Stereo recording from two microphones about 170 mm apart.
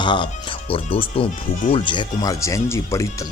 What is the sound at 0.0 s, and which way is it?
Speech, 25° left (ahead or behind).